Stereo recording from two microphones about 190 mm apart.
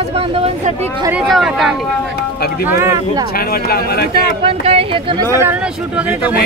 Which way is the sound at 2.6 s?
15° right (ahead or behind).